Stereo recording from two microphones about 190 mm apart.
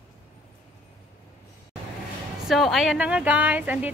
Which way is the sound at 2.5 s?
Centre (ahead or behind).